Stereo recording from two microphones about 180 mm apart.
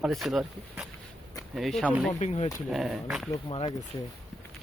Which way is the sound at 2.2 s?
40° left (ahead or behind).